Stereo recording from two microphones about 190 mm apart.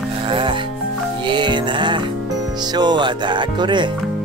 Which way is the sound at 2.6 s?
20° right (ahead or behind).